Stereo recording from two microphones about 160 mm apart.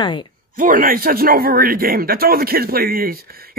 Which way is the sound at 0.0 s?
30° left (ahead or behind).